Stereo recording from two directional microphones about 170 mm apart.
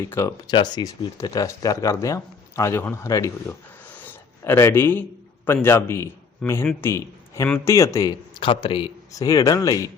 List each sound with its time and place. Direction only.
0.1 s a man's voice: 15° left (ahead or behind)
3.8 s a sound: 10° left (ahead or behind)
5.6 s a man's voice: 15° left (ahead or behind)